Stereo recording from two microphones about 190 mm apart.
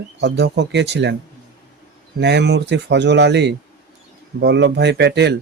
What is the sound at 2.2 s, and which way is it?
Speech, 65° right (ahead or behind).